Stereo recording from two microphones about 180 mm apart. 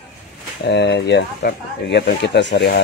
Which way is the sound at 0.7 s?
70° left (ahead or behind).